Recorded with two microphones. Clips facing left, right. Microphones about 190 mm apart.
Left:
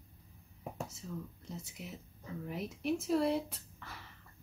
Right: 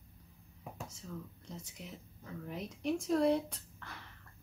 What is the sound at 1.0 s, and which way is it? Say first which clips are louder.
Speech: left 2 dB; 5° left (ahead or behind).